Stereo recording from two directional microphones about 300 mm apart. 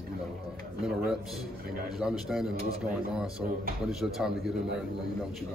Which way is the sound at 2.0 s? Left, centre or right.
Centre.